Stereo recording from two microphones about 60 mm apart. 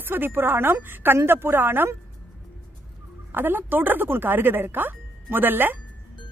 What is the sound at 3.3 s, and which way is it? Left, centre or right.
Speech, right.